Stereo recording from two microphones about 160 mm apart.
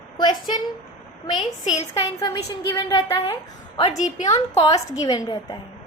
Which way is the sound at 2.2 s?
25° left (ahead or behind).